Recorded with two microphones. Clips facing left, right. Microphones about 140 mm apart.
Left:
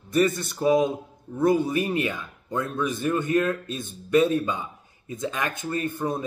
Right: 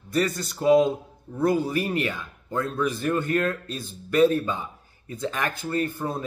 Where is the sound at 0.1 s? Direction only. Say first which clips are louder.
Left 3 dB; 25° left (ahead or behind).